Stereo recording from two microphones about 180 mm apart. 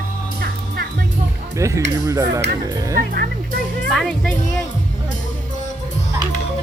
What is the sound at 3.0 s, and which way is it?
Speech, 55° right (ahead or behind).